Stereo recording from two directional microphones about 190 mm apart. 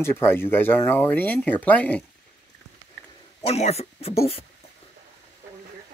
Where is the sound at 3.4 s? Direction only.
35° left (ahead or behind).